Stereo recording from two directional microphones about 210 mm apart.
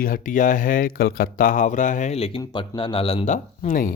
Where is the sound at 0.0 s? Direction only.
40° left (ahead or behind).